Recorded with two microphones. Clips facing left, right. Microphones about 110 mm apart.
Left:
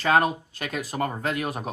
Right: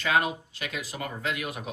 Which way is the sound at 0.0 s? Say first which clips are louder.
Left 5 dB; 40° left (ahead or behind).